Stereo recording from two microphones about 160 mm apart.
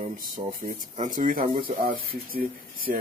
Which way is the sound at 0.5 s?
55° right (ahead or behind).